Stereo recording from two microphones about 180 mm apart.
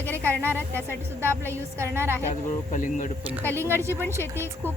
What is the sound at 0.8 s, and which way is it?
Speech, 15° right (ahead or behind).